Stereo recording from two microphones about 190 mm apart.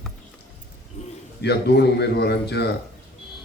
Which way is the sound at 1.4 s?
60° left (ahead or behind).